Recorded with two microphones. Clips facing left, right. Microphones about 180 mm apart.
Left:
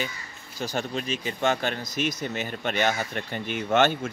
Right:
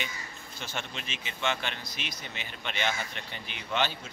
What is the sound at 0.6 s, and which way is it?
Speech, 40° left (ahead or behind).